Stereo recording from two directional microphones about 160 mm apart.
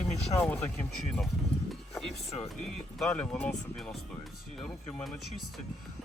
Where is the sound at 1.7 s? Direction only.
Centre (ahead or behind).